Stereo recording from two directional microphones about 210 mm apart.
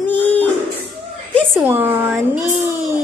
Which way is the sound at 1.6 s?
10° right (ahead or behind).